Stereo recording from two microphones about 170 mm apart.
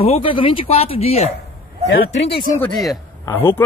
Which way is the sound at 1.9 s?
90° left.